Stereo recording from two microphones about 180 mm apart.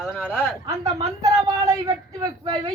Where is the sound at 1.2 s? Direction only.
20° right (ahead or behind).